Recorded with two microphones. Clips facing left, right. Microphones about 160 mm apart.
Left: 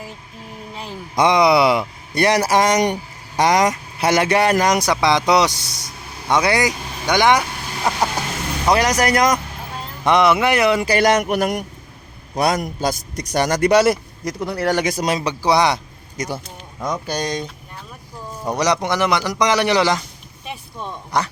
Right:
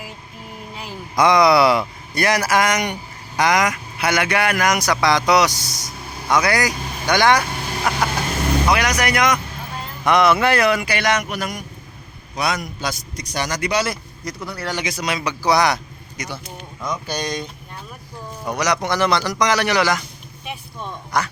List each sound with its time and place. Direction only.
0.9 s a man's voice: 25° left (ahead or behind)
7.9 s a man's voice: 30° left (ahead or behind)
10.0 s a man's voice: 25° left (ahead or behind)
10.8 s a man's voice: 40° left (ahead or behind)
11.2 s a man's voice: 55° left (ahead or behind)
14.3 s speech: 15° left (ahead or behind)
14.6 s a man's voice: 50° left (ahead or behind); by 15.8 s 25° left (ahead or behind)
16.1 s a man's voice: 45° left (ahead or behind)
18.4 s a man's voice: 30° left (ahead or behind)
20.4 s vehicle: 5° right (ahead or behind)